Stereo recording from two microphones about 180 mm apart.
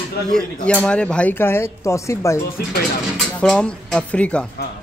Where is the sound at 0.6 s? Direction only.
5° left (ahead or behind).